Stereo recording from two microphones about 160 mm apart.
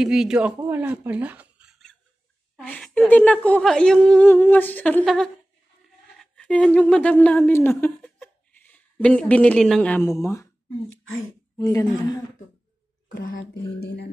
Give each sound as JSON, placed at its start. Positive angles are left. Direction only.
{"t": 0.0, "sound": "speech", "side_deg": -5}
{"t": 0.6, "sound": "a sound", "side_deg": -15}
{"t": 2.5, "sound": "a woman's voice", "side_deg": 5}
{"t": 11.5, "sound": "a man's voice", "side_deg": 20}
{"t": 13.2, "sound": "speech", "side_deg": 75}